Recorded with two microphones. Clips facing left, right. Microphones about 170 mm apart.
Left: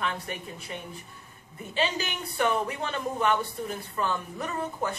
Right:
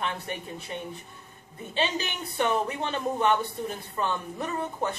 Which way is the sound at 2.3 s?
25° right (ahead or behind).